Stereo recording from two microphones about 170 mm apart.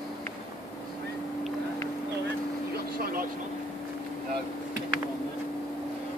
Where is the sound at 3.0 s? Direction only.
60° right (ahead or behind).